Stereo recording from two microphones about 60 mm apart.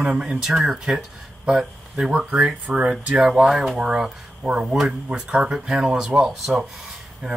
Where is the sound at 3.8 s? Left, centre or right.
Centre.